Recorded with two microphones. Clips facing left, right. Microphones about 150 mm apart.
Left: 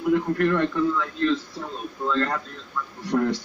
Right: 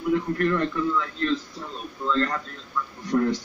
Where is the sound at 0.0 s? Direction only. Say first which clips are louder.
Left 2 dB; 65° left (ahead or behind).